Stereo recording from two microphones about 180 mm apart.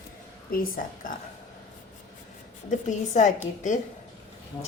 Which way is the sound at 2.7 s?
40° left (ahead or behind).